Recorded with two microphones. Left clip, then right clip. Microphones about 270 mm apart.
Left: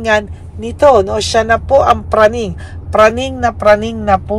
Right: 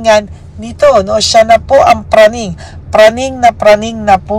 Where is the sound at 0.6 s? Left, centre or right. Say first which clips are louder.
Right 1 dB; centre.